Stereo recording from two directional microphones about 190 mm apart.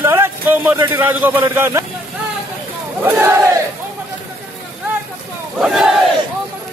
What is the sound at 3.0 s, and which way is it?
Speech, 10° right (ahead or behind).